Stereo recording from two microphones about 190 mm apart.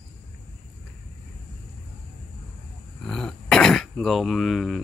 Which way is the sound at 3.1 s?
5° left (ahead or behind).